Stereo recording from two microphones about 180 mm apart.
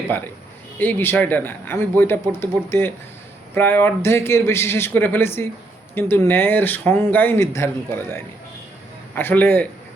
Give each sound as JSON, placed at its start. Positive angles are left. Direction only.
{"t": 0.8, "sound": "speech", "side_deg": 10}